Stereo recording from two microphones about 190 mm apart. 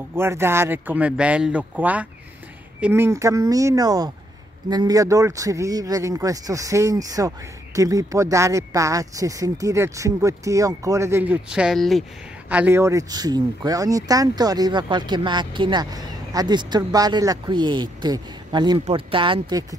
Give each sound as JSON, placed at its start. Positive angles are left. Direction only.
{"t": 0.1, "sound": "speech", "side_deg": -10}